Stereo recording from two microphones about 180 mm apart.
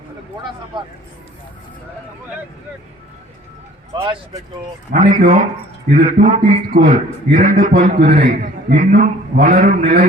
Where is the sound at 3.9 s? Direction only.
25° right (ahead or behind).